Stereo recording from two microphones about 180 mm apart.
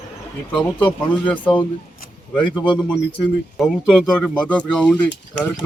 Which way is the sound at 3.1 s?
5° left (ahead or behind).